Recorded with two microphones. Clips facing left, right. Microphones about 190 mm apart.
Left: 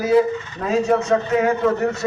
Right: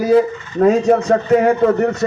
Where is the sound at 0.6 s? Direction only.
50° right (ahead or behind).